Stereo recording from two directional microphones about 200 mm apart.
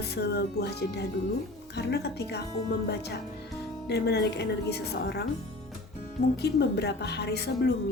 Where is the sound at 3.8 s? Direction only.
55° left (ahead or behind).